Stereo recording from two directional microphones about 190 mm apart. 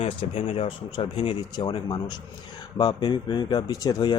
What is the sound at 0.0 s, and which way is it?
Speech, 30° left (ahead or behind).